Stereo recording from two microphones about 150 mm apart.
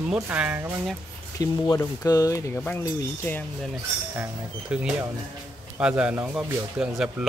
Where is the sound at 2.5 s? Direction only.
10° left (ahead or behind).